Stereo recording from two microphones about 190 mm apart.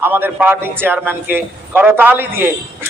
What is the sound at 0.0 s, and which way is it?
A man's voice, 10° right (ahead or behind).